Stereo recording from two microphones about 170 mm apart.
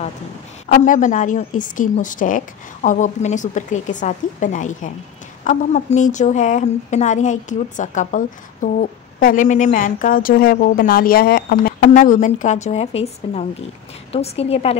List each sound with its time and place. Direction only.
0.7 s a woman's voice: 50° left (ahead or behind)